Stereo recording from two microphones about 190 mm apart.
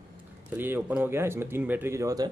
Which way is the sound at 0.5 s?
10° right (ahead or behind).